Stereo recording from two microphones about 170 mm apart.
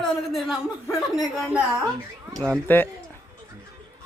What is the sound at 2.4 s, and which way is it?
Speech, 10° left (ahead or behind).